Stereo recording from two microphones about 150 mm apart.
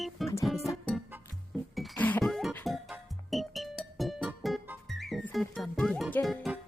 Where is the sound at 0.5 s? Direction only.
20° left (ahead or behind).